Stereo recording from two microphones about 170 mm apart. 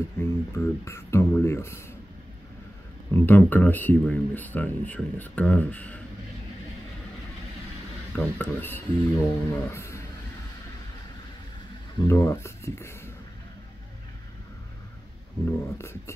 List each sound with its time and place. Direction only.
0.2 s speech: 15° left (ahead or behind)
3.1 s speech: 10° left (ahead or behind)
8.2 s speech: 10° left (ahead or behind)
12.0 s speech: 15° left (ahead or behind)
15.4 s speech: 15° left (ahead or behind)